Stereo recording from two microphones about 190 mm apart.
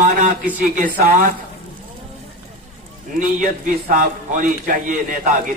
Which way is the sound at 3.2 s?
45° right (ahead or behind).